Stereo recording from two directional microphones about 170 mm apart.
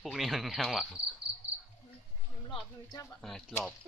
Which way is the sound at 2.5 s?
25° left (ahead or behind).